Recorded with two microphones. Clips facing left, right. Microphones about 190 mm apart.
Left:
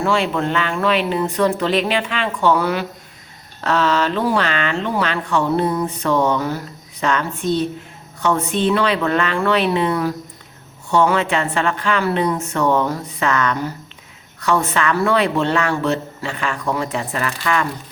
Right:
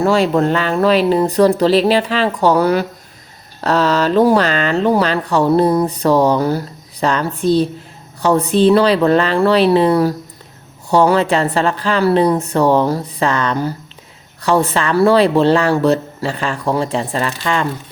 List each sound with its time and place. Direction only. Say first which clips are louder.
0.0 s speech: right 6 dB; 40° right (ahead or behind)